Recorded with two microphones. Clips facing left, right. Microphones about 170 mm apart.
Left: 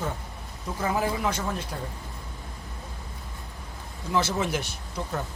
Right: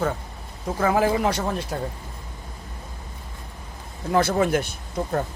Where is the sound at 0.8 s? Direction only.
85° right; by 1.5 s 65° right (ahead or behind).